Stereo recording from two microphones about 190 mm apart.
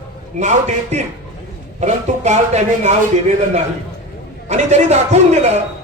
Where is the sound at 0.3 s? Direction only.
35° right (ahead or behind).